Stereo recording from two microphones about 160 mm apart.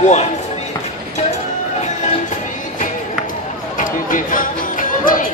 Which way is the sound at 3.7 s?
55° left (ahead or behind).